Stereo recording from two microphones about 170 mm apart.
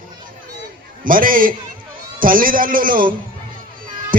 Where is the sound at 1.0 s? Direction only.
55° right (ahead or behind).